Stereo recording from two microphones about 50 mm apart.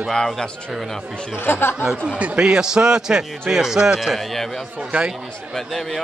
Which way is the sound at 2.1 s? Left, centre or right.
Centre.